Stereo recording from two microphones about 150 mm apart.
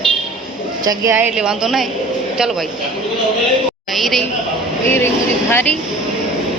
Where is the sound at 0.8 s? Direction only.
25° right (ahead or behind).